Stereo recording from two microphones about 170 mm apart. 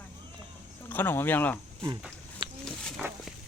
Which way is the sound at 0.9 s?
10° left (ahead or behind).